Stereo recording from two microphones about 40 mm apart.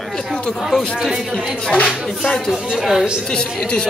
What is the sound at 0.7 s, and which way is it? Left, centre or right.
Speech, centre.